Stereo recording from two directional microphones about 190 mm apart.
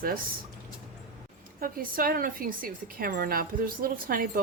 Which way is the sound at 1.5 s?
50° right (ahead or behind).